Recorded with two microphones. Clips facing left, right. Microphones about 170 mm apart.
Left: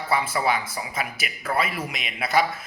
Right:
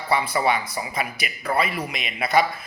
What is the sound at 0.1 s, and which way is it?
A man's voice, centre (ahead or behind).